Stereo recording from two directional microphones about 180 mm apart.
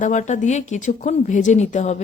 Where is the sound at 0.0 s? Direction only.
40° left (ahead or behind).